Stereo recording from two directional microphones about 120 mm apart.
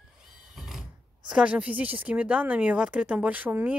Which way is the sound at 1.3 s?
10° right (ahead or behind).